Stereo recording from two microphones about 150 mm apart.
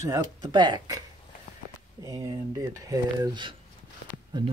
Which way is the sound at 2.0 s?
25° right (ahead or behind).